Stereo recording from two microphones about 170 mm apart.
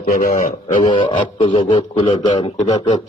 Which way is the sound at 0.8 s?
30° left (ahead or behind).